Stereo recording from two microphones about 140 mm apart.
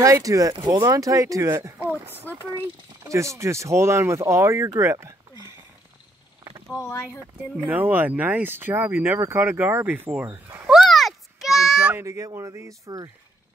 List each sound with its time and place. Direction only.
0.0 s speech: 25° right (ahead or behind)
1.8 s a sound: 15° right (ahead or behind)
2.5 s speech: 20° right (ahead or behind)
7.2 s speech: 15° right (ahead or behind)
10.7 s a sound: centre (ahead or behind)
11.9 s speech: 20° right (ahead or behind)